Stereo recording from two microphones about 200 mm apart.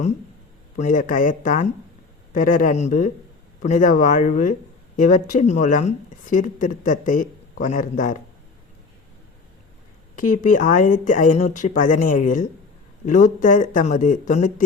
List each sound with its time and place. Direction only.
0.8 s speech: 40° left (ahead or behind)
10.2 s speech: 40° left (ahead or behind)